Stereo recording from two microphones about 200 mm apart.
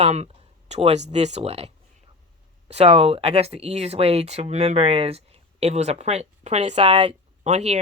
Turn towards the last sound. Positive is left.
turn(degrees=-35)  # may be behind; listen again after turning